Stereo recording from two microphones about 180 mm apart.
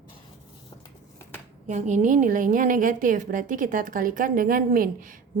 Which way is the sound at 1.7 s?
40° right (ahead or behind).